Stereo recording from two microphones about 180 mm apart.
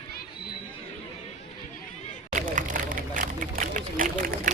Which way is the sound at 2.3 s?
45° right (ahead or behind).